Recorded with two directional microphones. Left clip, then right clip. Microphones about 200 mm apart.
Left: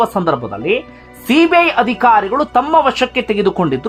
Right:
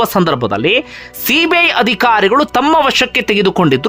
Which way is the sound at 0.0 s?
20° right (ahead or behind).